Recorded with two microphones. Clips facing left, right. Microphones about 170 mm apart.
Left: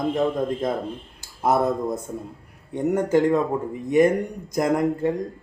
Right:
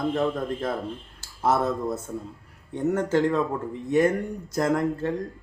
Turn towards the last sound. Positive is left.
turn(degrees=15)  # may be behind; listen again after turning